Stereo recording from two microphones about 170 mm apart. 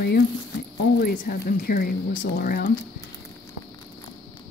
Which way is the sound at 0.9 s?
55° left (ahead or behind).